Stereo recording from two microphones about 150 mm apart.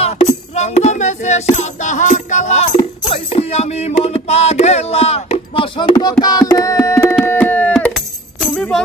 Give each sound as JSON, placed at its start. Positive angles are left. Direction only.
{"t": 0.0, "sound": "music", "side_deg": 45}
{"t": 6.2, "sound": "carnatic music", "side_deg": 25}
{"t": 7.2, "sound": "a sound", "side_deg": 15}
{"t": 7.9, "sound": "music", "side_deg": 0}